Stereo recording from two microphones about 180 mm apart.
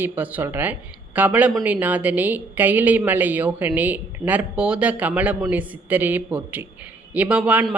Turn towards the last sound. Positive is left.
turn(degrees=-5)  # may be behind; listen again after turning